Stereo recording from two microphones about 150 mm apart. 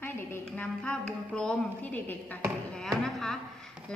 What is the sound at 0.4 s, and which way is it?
A woman's voice, 10° left (ahead or behind).